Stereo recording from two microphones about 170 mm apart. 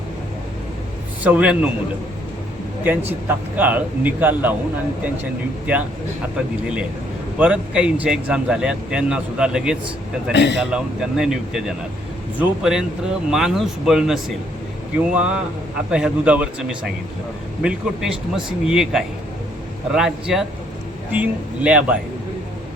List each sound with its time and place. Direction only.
1.2 s a man's voice: 5° right (ahead or behind)
2.8 s a man's voice: 10° right (ahead or behind)
6.3 s a man's voice: 5° right (ahead or behind)
10.3 s speech: 90° left
10.6 s a man's voice: 5° right (ahead or behind)